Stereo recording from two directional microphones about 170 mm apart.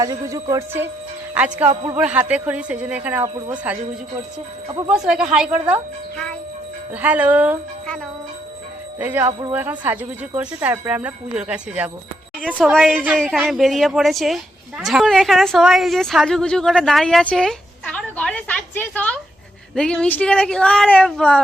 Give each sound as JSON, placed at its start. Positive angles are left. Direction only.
{"t": 0.0, "sound": "speech", "side_deg": -20}
{"t": 3.3, "sound": "speech", "side_deg": -25}
{"t": 4.9, "sound": "a woman's voice", "side_deg": -5}
{"t": 6.9, "sound": "speech", "side_deg": -10}
{"t": 9.0, "sound": "a woman's voice", "side_deg": -10}